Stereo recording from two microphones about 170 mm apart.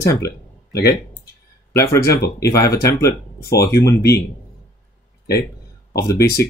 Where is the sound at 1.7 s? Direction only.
15° left (ahead or behind).